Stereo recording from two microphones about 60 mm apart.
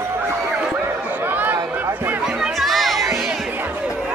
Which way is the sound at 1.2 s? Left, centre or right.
Right.